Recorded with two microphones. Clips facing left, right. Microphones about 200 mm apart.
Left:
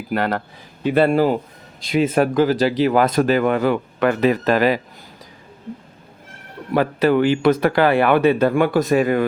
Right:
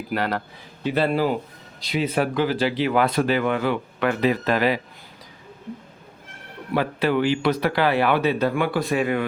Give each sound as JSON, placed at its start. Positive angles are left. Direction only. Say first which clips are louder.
{"t": 0.1, "sound": "speech", "louder": "left 4 dB", "side_deg": 50}
{"t": 6.7, "sound": "speech", "louder": "left 5 dB", "side_deg": 45}